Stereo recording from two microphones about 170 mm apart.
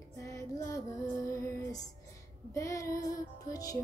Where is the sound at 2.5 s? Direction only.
20° left (ahead or behind).